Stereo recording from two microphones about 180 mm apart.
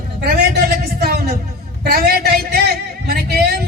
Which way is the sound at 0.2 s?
60° right (ahead or behind).